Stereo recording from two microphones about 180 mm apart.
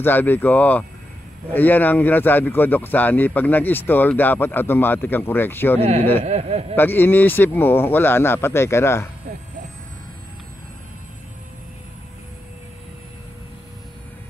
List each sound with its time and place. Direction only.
0.0 s speech: 10° left (ahead or behind)
5.8 s speech: 35° right (ahead or behind)
6.7 s speech: 10° left (ahead or behind)